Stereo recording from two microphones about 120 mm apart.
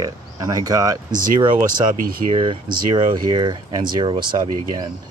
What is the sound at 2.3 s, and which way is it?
Speech, 45° right (ahead or behind).